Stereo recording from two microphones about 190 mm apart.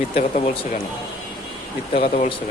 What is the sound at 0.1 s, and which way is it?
Speech, 35° left (ahead or behind).